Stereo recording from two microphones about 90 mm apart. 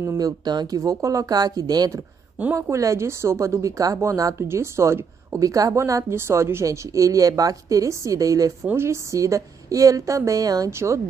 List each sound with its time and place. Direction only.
0.2 s speech: 45° right (ahead or behind)
2.5 s a woman's voice: 35° right (ahead or behind)
10.7 s a woman's voice: 30° right (ahead or behind)